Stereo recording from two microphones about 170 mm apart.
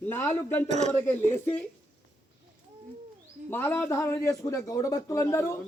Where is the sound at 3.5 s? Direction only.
10° left (ahead or behind).